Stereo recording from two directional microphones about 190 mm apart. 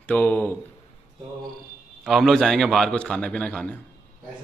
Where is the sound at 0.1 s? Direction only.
10° left (ahead or behind).